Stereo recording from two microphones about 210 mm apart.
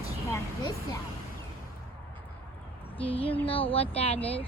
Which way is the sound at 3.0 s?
25° left (ahead or behind).